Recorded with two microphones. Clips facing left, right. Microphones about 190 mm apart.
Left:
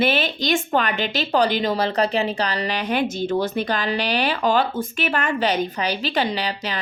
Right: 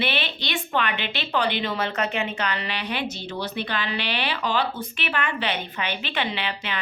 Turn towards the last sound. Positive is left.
turn(degrees=40)  # may be behind; listen again after turning